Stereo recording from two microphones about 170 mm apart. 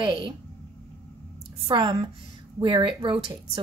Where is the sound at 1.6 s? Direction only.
30° right (ahead or behind).